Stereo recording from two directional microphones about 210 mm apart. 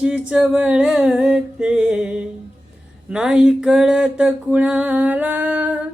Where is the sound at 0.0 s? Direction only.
5° right (ahead or behind).